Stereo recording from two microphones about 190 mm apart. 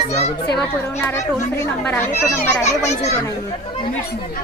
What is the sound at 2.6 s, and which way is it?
Speech, 35° left (ahead or behind).